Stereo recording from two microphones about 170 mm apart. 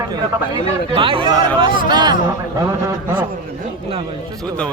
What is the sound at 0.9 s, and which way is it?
Speech, 30° right (ahead or behind).